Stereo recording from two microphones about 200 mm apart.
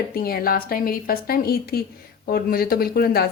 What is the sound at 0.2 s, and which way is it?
A woman's voice, 50° left (ahead or behind).